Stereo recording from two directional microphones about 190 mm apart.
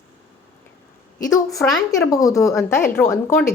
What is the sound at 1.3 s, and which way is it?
Speech, 15° left (ahead or behind).